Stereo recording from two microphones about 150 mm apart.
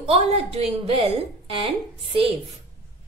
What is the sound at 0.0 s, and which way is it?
Speech, 45° right (ahead or behind).